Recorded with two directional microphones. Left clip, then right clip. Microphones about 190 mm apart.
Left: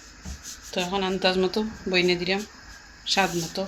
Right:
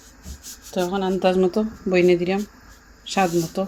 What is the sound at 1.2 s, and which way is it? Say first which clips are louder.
A woman's voice: right 6 dB; 45° right (ahead or behind).